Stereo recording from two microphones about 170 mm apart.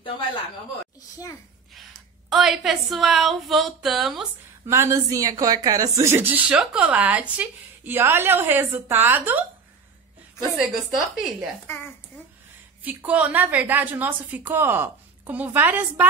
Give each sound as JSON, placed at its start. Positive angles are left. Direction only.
{"t": 1.1, "sound": "a child's voice", "side_deg": 20}
{"t": 2.2, "sound": "a woman's voice", "side_deg": 0}
{"t": 4.6, "sound": "a woman's voice", "side_deg": -15}
{"t": 10.6, "sound": "a woman's voice", "side_deg": 0}
{"t": 12.8, "sound": "a woman's voice", "side_deg": -10}